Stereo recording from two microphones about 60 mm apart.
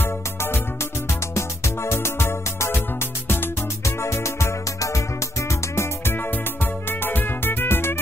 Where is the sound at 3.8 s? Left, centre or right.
Left.